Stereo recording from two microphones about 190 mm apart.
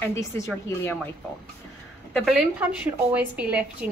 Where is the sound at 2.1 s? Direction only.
Centre (ahead or behind).